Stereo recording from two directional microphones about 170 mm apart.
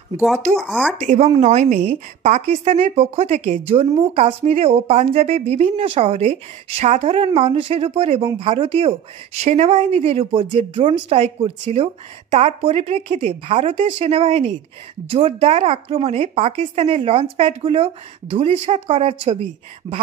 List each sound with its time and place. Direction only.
0.6 s speech: 5° left (ahead or behind)
1.0 s speech: 45° right (ahead or behind)
19.9 s speech: 20° right (ahead or behind)